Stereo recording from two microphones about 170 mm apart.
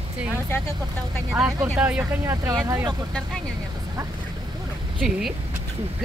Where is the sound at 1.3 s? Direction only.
5° right (ahead or behind).